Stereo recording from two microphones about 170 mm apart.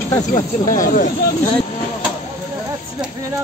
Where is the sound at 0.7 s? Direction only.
50° left (ahead or behind).